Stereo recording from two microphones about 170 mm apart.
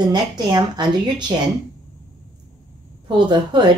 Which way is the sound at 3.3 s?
25° right (ahead or behind).